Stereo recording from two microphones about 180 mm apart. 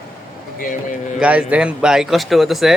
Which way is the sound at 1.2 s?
5° right (ahead or behind).